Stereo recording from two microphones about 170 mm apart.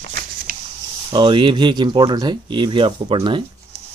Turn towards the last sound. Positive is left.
turn(degrees=-30)  # may be behind; listen again after turning